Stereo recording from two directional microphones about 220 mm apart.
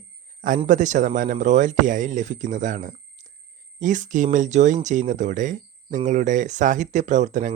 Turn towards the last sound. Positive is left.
turn(degrees=-35)  # may be behind; listen again after turning